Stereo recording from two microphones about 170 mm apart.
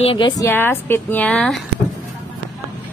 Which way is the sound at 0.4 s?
15° left (ahead or behind).